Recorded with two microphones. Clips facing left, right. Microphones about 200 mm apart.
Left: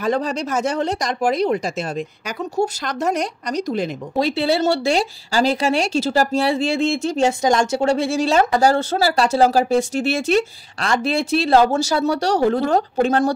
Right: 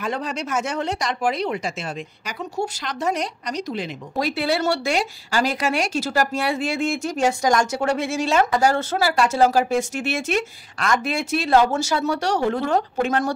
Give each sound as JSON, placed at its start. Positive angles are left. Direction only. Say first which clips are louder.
{"t": 0.0, "sound": "speech", "louder": "left 6 dB", "side_deg": 40}
{"t": 4.2, "sound": "speech", "louder": "left 4 dB", "side_deg": 25}